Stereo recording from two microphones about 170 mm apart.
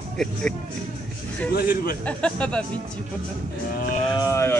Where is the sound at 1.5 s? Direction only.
60° left (ahead or behind).